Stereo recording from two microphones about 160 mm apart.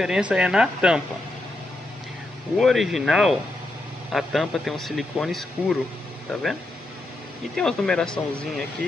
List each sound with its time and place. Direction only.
0.0 s speech: 5° right (ahead or behind)
2.5 s speech: centre (ahead or behind)
7.5 s speech: 5° left (ahead or behind)